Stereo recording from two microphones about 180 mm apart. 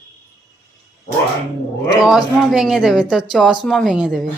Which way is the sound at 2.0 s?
Centre (ahead or behind).